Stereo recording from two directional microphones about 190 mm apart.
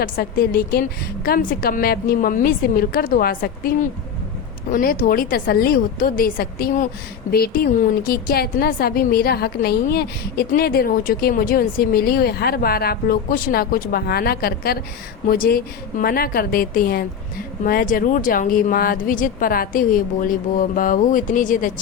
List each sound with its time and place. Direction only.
0.0 s a woman's voice: 50° left (ahead or behind)